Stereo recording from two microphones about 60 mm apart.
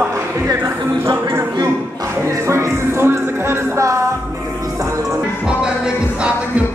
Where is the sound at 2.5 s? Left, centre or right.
Right.